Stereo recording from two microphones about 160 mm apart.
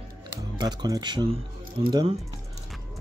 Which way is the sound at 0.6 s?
25° right (ahead or behind).